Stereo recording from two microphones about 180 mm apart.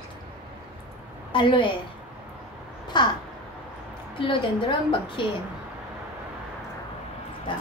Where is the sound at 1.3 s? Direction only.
30° left (ahead or behind).